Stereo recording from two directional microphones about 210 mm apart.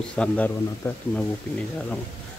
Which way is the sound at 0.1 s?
5° left (ahead or behind).